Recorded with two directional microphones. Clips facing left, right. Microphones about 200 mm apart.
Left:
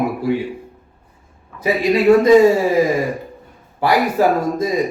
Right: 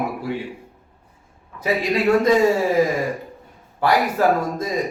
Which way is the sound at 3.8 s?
5° left (ahead or behind).